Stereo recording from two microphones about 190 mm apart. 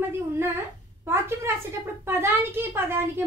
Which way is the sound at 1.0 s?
15° right (ahead or behind).